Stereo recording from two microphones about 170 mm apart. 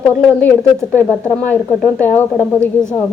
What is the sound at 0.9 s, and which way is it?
Speech, 10° left (ahead or behind).